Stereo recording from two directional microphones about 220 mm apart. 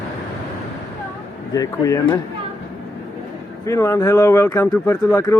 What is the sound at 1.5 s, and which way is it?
Speech, 15° left (ahead or behind).